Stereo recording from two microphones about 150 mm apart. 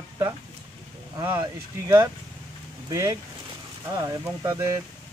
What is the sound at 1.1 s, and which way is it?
Speech, 20° right (ahead or behind).